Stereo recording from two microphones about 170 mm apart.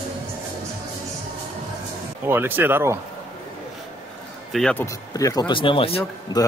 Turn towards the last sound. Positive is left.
turn(degrees=25)  # may be behind; listen again after turning